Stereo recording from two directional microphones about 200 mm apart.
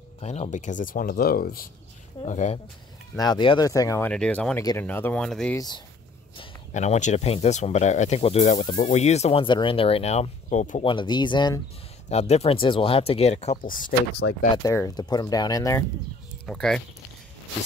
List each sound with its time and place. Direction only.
0.2 s speech: 35° left (ahead or behind)
2.2 s speech: 35° left (ahead or behind)
3.2 s speech: 20° left (ahead or behind)
4.1 s speech: 5° left (ahead or behind)
6.7 s speech: 35° left (ahead or behind)
10.9 s speech: 25° left (ahead or behind)
12.1 s speech: 30° left (ahead or behind)
13.7 s speech: 45° left (ahead or behind)
14.2 s speech: 65° left (ahead or behind)
14.6 s speech: 15° left (ahead or behind)
16.4 s speech: 5° left (ahead or behind)